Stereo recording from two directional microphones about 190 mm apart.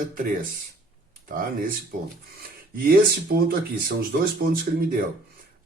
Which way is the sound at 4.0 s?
50° right (ahead or behind).